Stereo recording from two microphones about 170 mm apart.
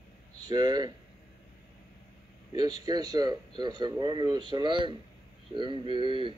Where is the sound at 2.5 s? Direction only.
25° right (ahead or behind).